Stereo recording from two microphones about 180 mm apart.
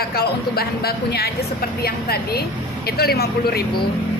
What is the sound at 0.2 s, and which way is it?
A woman's voice, 60° left (ahead or behind).